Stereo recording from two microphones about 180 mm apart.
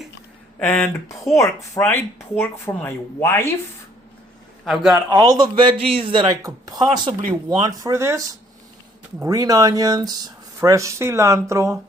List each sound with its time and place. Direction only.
0.6 s speech: 10° left (ahead or behind)
4.6 s speech: centre (ahead or behind)
5.1 s a man's voice: 20° right (ahead or behind)